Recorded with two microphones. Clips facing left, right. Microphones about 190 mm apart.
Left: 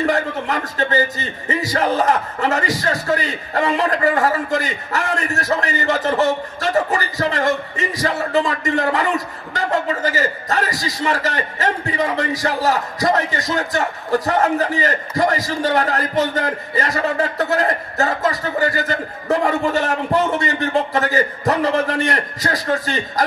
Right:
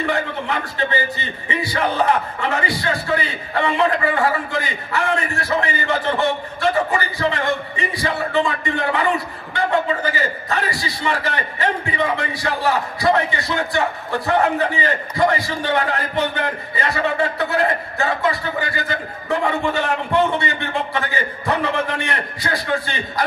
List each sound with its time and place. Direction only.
0.0 s a man's voice: 40° left (ahead or behind)